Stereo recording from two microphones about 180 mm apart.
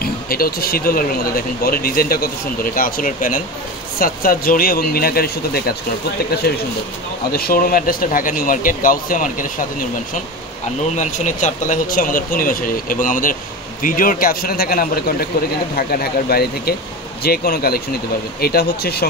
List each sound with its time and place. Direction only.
0.0 s speech: 55° left (ahead or behind)
11.0 s speech: 45° left (ahead or behind); by 19.0 s 60° left (ahead or behind)